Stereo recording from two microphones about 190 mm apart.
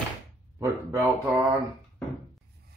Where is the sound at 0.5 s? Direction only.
10° right (ahead or behind).